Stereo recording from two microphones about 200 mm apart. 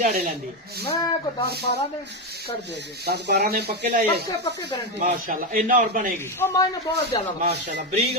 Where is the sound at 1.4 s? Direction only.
50° right (ahead or behind).